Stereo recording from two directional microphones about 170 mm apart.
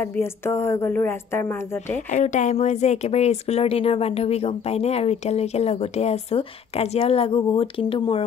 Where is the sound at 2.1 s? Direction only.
45° left (ahead or behind).